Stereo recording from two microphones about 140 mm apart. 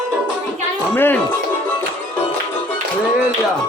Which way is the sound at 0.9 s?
15° left (ahead or behind).